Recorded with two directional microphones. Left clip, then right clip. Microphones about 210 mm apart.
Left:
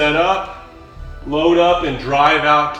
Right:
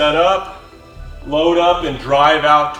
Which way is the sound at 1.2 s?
15° right (ahead or behind).